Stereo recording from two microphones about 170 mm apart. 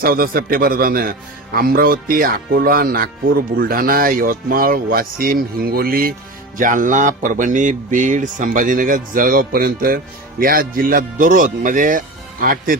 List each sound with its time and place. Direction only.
0.0 s speech: 60° right (ahead or behind)